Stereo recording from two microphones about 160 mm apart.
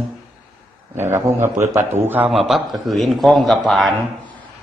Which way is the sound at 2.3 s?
Centre (ahead or behind).